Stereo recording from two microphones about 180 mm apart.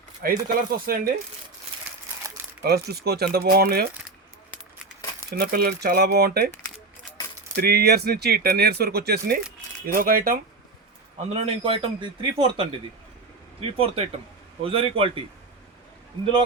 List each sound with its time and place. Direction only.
0.2 s speech: 55° right (ahead or behind)
2.6 s speech: 60° right (ahead or behind)
5.3 s speech: 60° right (ahead or behind)
7.5 s speech: 60° right (ahead or behind)
11.3 s speech: 30° right (ahead or behind)